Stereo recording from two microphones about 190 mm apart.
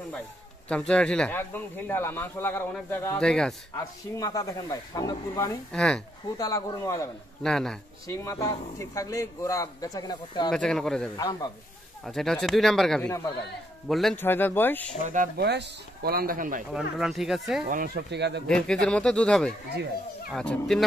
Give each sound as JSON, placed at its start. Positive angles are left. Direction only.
{"t": 0.7, "sound": "speech", "side_deg": 5}
{"t": 3.7, "sound": "speech", "side_deg": 20}
{"t": 5.7, "sound": "speech", "side_deg": 5}
{"t": 6.3, "sound": "speech", "side_deg": 20}
{"t": 7.4, "sound": "speech", "side_deg": 5}
{"t": 8.1, "sound": "speech", "side_deg": 15}
{"t": 10.5, "sound": "speech", "side_deg": 5}
{"t": 11.1, "sound": "speech", "side_deg": 20}
{"t": 12.0, "sound": "speech", "side_deg": 0}
{"t": 15.3, "sound": "speech", "side_deg": -60}
{"t": 17.0, "sound": "speech", "side_deg": 0}
{"t": 17.6, "sound": "speech", "side_deg": -50}
{"t": 18.5, "sound": "speech", "side_deg": 5}